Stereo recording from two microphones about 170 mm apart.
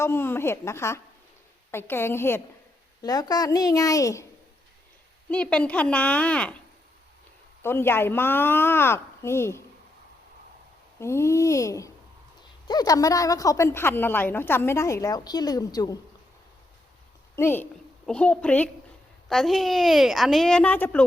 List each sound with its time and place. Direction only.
0.0 s a woman's voice: 15° left (ahead or behind)
5.3 s speech: 5° left (ahead or behind)
7.6 s speech: 15° left (ahead or behind)
11.0 s a woman's voice: 15° left (ahead or behind)
17.3 s a woman's voice: 15° left (ahead or behind)